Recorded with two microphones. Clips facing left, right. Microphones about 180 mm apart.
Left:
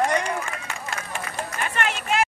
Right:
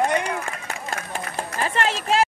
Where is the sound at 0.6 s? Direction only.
40° right (ahead or behind).